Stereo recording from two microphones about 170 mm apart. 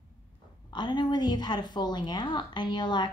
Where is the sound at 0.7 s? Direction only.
25° left (ahead or behind).